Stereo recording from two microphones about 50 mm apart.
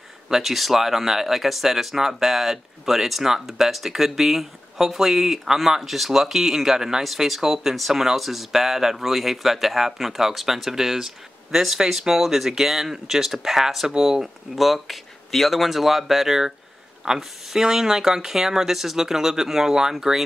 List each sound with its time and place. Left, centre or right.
0.3 s speech: centre